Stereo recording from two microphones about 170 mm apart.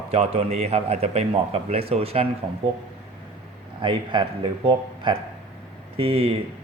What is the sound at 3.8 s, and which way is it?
A man's voice, 30° right (ahead or behind).